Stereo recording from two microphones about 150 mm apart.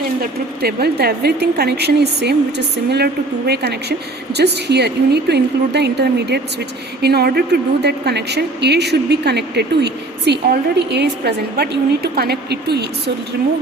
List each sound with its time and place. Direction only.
0.2 s a woman's voice: 90° right